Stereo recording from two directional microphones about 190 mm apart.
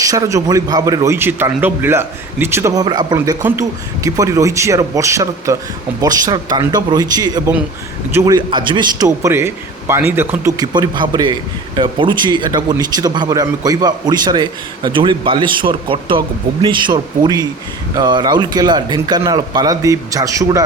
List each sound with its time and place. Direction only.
0.0 s a man's voice: 20° right (ahead or behind)